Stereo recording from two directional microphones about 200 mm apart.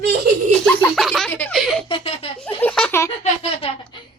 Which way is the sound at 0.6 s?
5° left (ahead or behind).